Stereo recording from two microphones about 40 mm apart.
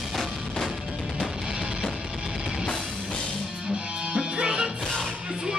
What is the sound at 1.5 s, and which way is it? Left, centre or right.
Music, centre.